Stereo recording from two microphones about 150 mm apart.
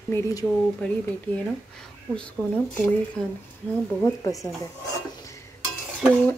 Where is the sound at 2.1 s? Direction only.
10° left (ahead or behind).